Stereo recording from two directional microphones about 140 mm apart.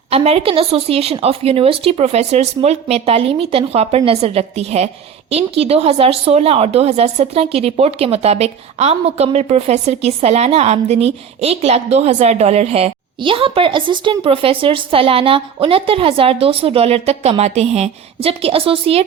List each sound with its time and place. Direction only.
0.1 s speech: 45° right (ahead or behind)